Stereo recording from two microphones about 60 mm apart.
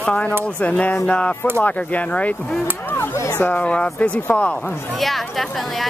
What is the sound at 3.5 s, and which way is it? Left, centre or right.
Speech, left.